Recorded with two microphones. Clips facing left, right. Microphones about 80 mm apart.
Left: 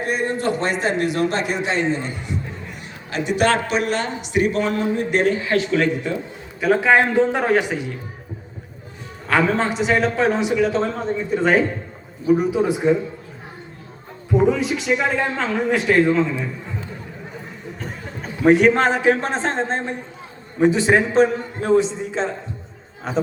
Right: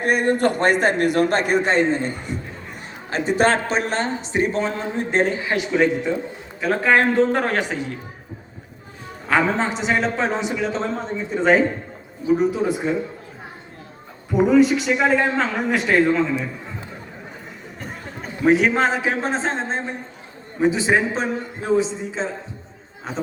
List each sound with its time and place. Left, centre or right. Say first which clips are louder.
0.0 s a man's voice: right 3 dB; right; by 6.1 s centre
6.6 s a man's voice: left 2 dB; centre
9.2 s a man's voice: left 1 dB; centre
14.3 s a man's voice: right 3 dB; centre
17.7 s a man's voice: even; centre